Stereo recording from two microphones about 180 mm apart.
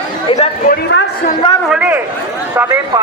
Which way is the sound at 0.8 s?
80° left.